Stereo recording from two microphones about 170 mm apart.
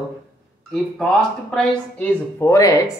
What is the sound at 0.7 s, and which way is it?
Speech, 5° left (ahead or behind).